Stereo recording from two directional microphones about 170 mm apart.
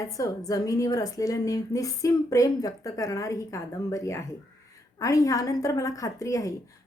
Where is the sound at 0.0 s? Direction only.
20° left (ahead or behind).